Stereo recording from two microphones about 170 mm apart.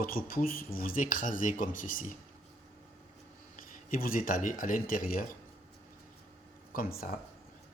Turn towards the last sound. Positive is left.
turn(degrees=60)  # may be behind; listen again after turning